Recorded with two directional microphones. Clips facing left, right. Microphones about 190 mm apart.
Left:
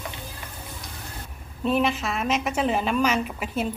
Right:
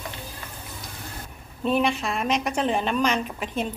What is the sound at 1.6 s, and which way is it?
Speech, centre (ahead or behind).